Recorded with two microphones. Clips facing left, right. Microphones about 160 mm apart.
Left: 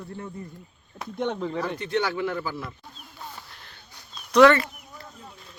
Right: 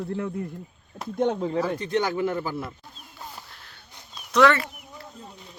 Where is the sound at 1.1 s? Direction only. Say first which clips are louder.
Right 4 dB; 40° right (ahead or behind).